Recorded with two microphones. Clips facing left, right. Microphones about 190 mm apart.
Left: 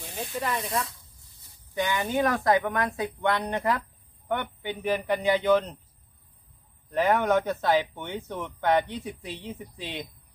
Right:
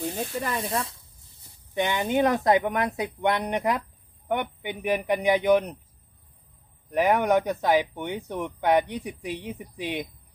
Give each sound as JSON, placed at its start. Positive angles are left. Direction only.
{"t": 0.5, "sound": "speech", "side_deg": -30}
{"t": 6.9, "sound": "speech", "side_deg": -15}